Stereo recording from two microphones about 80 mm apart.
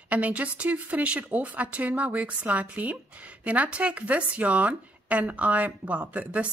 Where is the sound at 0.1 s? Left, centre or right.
Centre.